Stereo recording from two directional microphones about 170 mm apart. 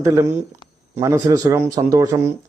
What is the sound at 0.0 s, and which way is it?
Speech, 15° right (ahead or behind).